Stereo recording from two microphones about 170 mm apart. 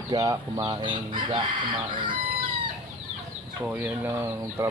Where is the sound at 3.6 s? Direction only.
10° right (ahead or behind).